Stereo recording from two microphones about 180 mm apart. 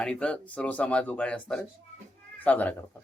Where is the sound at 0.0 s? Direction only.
5° left (ahead or behind).